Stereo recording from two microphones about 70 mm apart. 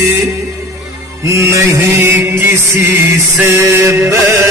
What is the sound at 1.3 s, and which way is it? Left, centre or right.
Music, right.